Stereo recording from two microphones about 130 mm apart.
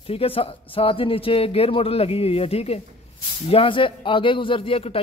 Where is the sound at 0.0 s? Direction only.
45° left (ahead or behind).